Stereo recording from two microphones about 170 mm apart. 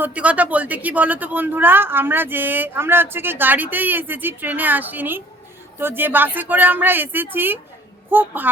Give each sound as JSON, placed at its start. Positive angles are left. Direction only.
{"t": 0.0, "sound": "speech", "side_deg": -10}